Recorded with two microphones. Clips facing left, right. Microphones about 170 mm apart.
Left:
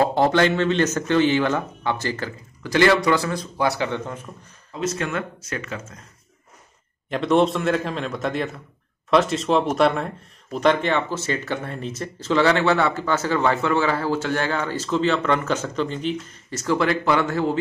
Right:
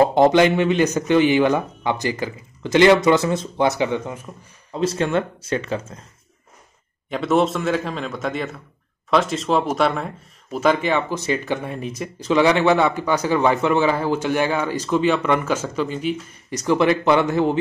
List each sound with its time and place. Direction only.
0.0 s speech: 15° right (ahead or behind)
4.7 s speech: 30° right (ahead or behind)
7.1 s a man's voice: centre (ahead or behind); by 17.6 s 20° right (ahead or behind)